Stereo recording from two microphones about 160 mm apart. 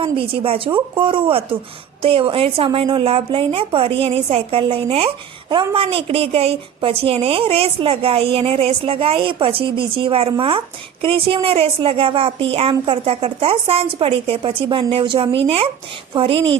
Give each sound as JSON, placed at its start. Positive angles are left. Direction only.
{"t": 0.0, "sound": "a woman's voice", "side_deg": -35}